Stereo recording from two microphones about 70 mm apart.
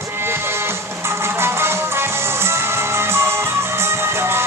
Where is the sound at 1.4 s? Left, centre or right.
Right.